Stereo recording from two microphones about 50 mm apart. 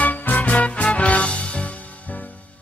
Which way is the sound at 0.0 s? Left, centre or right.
Left.